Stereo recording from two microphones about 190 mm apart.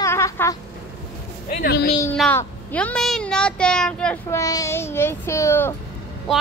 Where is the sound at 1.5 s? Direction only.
55° left (ahead or behind).